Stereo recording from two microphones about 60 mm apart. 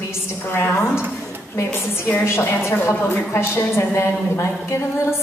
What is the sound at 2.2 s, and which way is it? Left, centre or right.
A woman's voice, left.